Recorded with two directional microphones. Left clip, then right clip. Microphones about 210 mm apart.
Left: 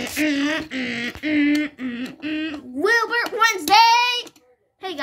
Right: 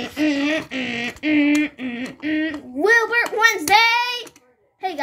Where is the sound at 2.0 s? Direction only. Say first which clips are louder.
Right 5 dB; 15° left (ahead or behind).